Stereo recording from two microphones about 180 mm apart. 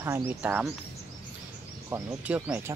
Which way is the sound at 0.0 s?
10° right (ahead or behind).